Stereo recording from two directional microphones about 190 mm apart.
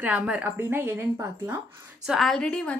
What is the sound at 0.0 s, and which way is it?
Speech, 5° right (ahead or behind).